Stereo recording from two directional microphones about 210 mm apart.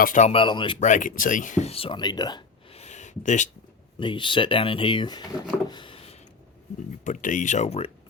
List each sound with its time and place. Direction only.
0.0 s speech: 35° left (ahead or behind)
0.9 s speech: 40° left (ahead or behind); by 2.8 s 20° left (ahead or behind)
2.8 s a sound: 35° left (ahead or behind)
4.0 s speech: 25° left (ahead or behind)
5.6 s a sound: 20° left (ahead or behind)
7.0 s speech: 35° left (ahead or behind)